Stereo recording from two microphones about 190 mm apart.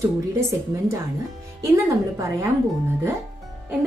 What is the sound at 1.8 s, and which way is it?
Speech, 15° right (ahead or behind).